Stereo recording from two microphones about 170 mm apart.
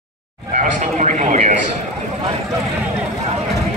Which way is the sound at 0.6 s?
45° right (ahead or behind).